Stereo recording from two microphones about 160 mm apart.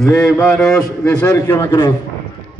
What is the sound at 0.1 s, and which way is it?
A man's voice, 15° left (ahead or behind).